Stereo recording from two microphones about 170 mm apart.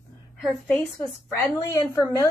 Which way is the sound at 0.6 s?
15° left (ahead or behind).